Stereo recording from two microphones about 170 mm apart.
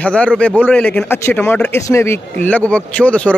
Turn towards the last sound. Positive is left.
turn(degrees=10)  # may be behind; listen again after turning